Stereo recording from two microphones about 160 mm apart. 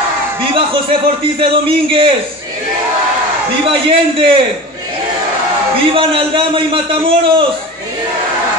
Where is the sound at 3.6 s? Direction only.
35° right (ahead or behind).